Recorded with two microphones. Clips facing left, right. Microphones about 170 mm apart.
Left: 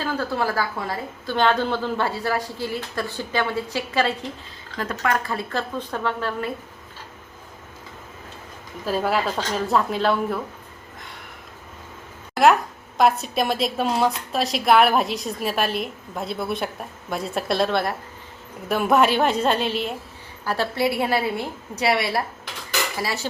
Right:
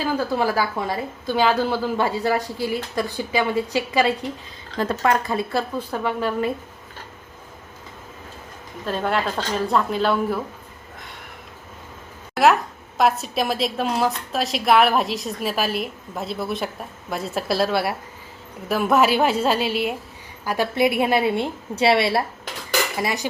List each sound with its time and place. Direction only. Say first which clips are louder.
0.0 s a woman's voice: right 3 dB; 10° right (ahead or behind)
4.8 s a woman's voice: right 4 dB; 30° right (ahead or behind)
5.3 s a woman's voice: right 3 dB; 10° right (ahead or behind)
8.8 s a woman's voice: left 1 dB; 5° left (ahead or behind)
12.3 s a sound: even; centre (ahead or behind)
13.0 s a woman's voice: left 1 dB; centre (ahead or behind); by 23.2 s 20° right (ahead or behind)